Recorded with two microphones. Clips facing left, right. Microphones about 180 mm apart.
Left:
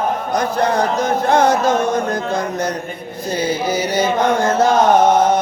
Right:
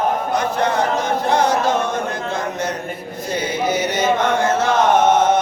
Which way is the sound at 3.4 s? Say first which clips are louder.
Left 1 dB; 35° left (ahead or behind).